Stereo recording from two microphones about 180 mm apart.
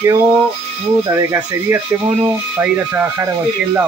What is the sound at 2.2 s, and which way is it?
Speech, 10° right (ahead or behind).